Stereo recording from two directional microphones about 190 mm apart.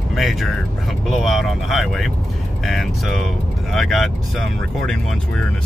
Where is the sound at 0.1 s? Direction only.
Centre (ahead or behind).